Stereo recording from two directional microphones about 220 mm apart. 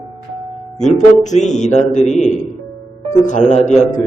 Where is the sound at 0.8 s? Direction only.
35° left (ahead or behind).